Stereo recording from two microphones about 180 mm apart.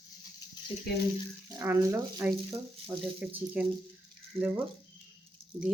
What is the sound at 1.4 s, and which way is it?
Speech, 15° right (ahead or behind).